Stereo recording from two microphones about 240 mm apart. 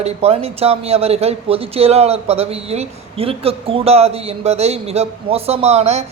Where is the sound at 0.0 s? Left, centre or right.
Right.